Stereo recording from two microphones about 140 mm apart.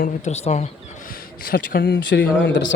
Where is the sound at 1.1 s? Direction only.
90° left.